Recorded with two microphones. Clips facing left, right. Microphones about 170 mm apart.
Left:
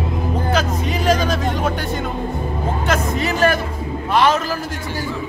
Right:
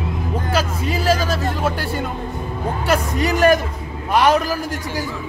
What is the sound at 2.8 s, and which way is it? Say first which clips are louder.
Speech: right 2 dB; 15° right (ahead or behind).